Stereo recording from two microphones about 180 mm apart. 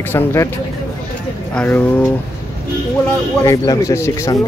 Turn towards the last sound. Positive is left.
turn(degrees=20)  # may be behind; listen again after turning